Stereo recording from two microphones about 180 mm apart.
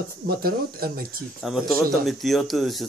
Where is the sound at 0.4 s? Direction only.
55° right (ahead or behind).